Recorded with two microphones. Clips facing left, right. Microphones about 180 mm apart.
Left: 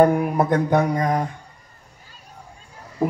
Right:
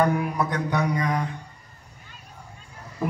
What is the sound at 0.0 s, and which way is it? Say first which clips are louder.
Speech: left 6 dB; 50° left (ahead or behind).